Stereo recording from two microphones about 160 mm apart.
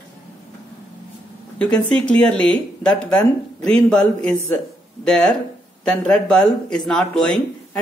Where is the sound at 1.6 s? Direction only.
5° left (ahead or behind).